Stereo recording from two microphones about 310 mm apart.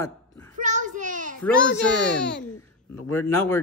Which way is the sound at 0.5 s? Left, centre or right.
Right.